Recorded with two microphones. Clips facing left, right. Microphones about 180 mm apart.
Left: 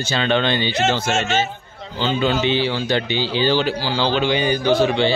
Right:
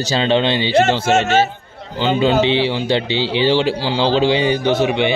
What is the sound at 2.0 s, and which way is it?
A man's voice, 15° right (ahead or behind).